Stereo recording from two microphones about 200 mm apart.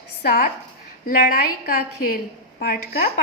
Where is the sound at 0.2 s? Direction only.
50° left (ahead or behind).